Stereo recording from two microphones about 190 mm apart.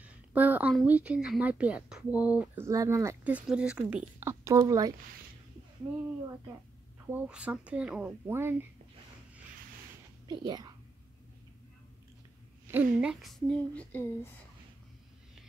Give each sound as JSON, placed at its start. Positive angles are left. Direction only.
{"t": 0.0, "sound": "speech", "side_deg": -10}
{"t": 7.1, "sound": "speech", "side_deg": -5}
{"t": 10.2, "sound": "speech", "side_deg": -20}
{"t": 12.7, "sound": "speech", "side_deg": -5}